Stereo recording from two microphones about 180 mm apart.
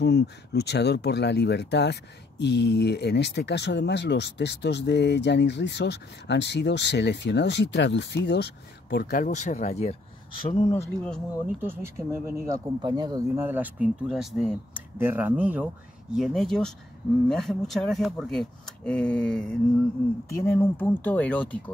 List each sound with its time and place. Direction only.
0.0 s speech: 65° left (ahead or behind); by 9.9 s 40° left (ahead or behind)
11.4 s speech: 10° right (ahead or behind)
13.3 s speech: 10° right (ahead or behind); by 21.5 s 10° left (ahead or behind)